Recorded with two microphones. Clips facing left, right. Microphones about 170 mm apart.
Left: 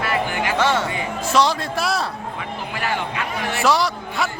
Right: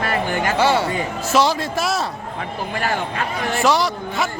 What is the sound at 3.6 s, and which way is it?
Speech, centre (ahead or behind).